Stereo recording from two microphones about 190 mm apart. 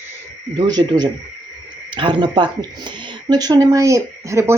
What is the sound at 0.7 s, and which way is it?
Speech, 20° right (ahead or behind).